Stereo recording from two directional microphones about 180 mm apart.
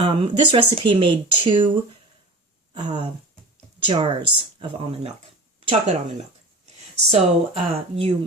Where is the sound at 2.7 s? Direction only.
25° right (ahead or behind).